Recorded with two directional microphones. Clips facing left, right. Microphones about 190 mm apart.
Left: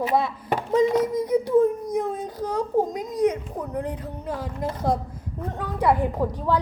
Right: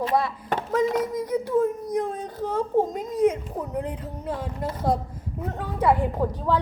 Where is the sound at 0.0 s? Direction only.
5° left (ahead or behind).